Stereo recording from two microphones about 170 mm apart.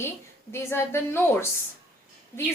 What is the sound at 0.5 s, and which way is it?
Speech, 15° left (ahead or behind).